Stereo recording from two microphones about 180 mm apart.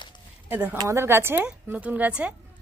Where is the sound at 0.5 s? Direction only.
10° right (ahead or behind).